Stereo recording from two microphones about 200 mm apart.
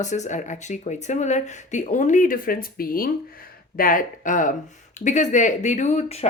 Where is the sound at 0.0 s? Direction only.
35° left (ahead or behind).